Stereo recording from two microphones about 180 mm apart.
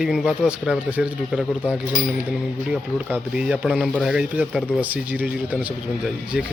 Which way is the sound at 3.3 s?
5° right (ahead or behind).